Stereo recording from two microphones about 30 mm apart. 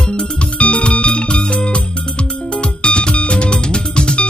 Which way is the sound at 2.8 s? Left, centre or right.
Left.